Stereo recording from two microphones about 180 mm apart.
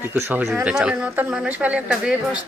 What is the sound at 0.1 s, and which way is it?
Speech, 10° right (ahead or behind).